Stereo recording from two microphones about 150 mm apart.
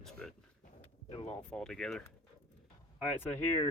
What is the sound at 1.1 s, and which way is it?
Speech, 40° left (ahead or behind).